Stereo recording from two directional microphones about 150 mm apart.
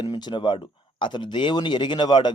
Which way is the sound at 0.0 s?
30° left (ahead or behind).